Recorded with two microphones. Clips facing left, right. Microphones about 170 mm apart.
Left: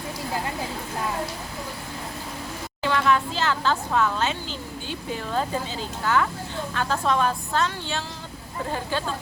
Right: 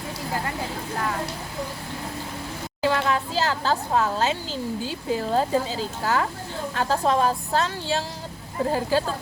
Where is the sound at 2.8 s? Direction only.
35° right (ahead or behind).